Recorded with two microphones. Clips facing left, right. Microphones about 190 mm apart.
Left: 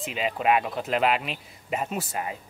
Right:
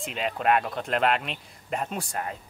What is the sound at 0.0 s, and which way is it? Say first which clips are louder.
Speech: left 1 dB; 5° left (ahead or behind).